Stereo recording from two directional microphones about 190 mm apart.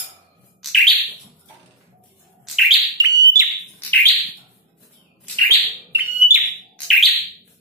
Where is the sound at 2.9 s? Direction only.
20° right (ahead or behind).